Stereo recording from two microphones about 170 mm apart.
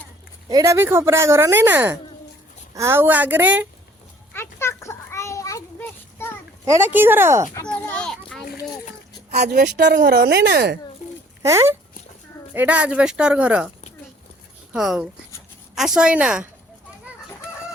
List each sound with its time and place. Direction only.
0.4 s speech: 20° right (ahead or behind)
4.4 s children playing: 15° left (ahead or behind)
6.7 s speech: 15° right (ahead or behind)
7.7 s children playing: 5° left (ahead or behind)
9.4 s a woman's voice: 60° right (ahead or behind)
11.4 s speech: 15° right (ahead or behind)
14.7 s a woman's voice: 5° right (ahead or behind)